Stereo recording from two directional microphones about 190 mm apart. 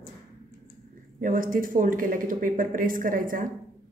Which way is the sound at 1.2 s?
45° right (ahead or behind).